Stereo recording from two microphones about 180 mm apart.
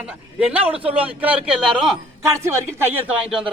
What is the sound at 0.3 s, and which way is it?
A man's voice, 5° right (ahead or behind).